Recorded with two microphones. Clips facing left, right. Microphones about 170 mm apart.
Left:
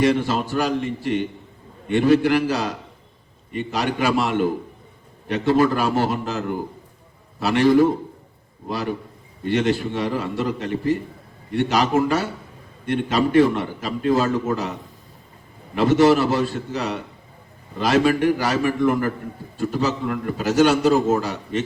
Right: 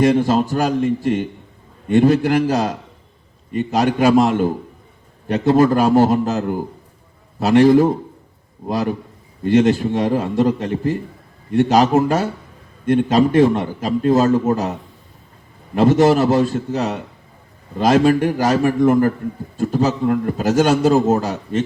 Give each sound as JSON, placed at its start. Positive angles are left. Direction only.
{"t": 0.0, "sound": "a man's voice", "side_deg": -45}
{"t": 15.7, "sound": "a man's voice", "side_deg": -40}